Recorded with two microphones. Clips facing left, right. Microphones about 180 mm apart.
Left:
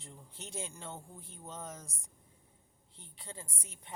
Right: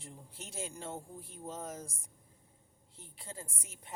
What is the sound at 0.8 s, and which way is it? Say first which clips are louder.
Speech: right 3 dB; 10° right (ahead or behind).